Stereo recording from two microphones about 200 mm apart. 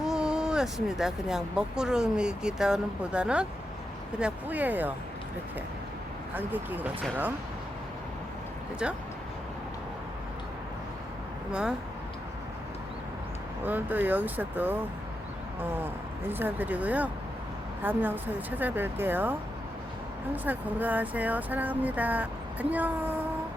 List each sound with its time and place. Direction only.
0.0 s speech: 5° right (ahead or behind)
6.3 s speech: 10° right (ahead or behind)
8.8 s speech: 5° right (ahead or behind)
13.7 s speech: 10° right (ahead or behind)